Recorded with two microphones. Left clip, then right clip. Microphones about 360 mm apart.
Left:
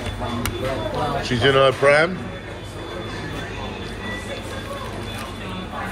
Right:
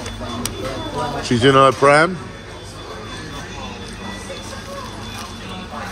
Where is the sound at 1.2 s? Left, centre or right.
Centre.